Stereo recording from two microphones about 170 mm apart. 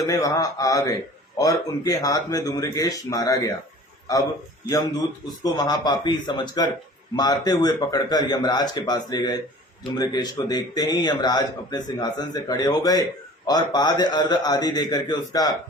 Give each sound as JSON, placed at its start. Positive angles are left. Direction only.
{"t": 0.0, "sound": "a man's voice", "side_deg": 20}
{"t": 5.4, "sound": "a man's voice", "side_deg": 20}